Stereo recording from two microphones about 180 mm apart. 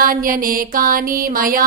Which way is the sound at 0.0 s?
50° right (ahead or behind).